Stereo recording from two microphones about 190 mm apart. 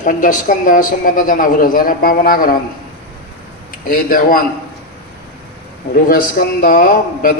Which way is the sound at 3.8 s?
50° left (ahead or behind).